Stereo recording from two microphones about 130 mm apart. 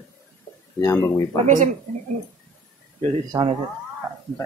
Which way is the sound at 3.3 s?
35° right (ahead or behind).